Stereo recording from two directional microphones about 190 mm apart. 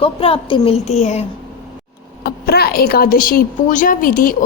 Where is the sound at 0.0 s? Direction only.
30° left (ahead or behind).